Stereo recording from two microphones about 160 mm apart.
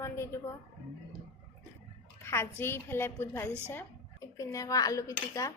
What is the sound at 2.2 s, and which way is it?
Speech, 15° left (ahead or behind).